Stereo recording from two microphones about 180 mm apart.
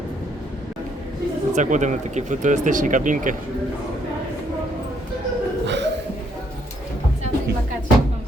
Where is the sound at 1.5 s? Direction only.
40° right (ahead or behind).